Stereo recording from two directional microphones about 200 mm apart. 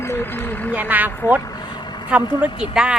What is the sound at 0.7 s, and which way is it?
Speech, 10° right (ahead or behind).